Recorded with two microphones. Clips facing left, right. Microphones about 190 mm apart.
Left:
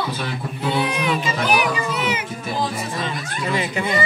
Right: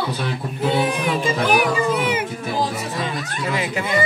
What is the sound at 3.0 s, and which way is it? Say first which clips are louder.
Speech: right 1 dB; 5° right (ahead or behind).